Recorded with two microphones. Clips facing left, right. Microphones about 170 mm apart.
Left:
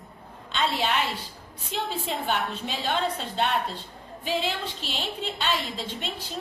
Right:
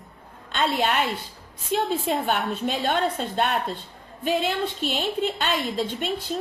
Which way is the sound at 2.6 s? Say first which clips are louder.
Right 6 dB; 50° right (ahead or behind).